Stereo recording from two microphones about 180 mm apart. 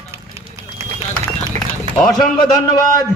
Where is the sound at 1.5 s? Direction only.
40° right (ahead or behind).